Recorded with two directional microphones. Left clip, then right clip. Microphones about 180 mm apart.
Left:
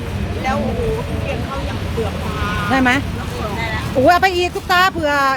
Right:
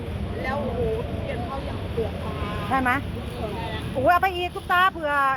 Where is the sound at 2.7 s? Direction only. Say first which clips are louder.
Left 7 dB; 30° left (ahead or behind).